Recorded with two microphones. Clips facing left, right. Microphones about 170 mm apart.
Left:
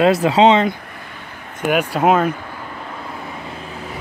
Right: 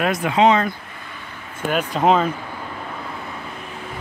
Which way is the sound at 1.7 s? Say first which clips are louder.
Left 2 dB; 10° left (ahead or behind).